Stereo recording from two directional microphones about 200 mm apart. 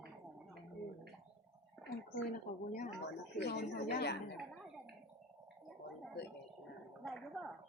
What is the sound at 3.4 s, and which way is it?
Speech, 55° left (ahead or behind).